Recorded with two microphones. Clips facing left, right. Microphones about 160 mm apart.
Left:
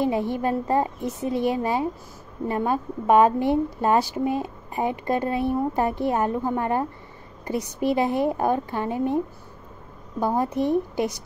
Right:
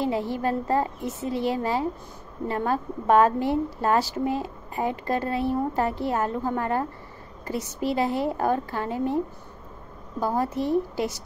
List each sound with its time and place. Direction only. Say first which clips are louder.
0.0 s a woman's voice: left 2 dB; 20° left (ahead or behind)
10.2 s speech: left 2 dB; 20° left (ahead or behind)